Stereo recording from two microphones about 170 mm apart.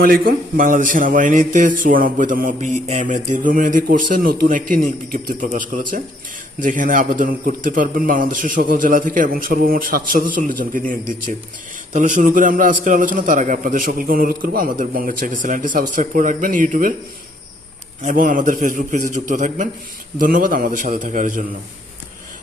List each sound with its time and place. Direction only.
0.0 s a man's voice: 60° right (ahead or behind)
18.0 s a man's voice: 50° right (ahead or behind)